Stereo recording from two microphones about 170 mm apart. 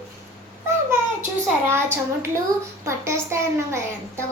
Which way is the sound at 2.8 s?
15° right (ahead or behind).